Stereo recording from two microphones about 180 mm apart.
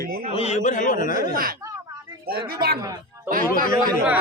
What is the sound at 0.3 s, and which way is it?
Speech, 35° left (ahead or behind).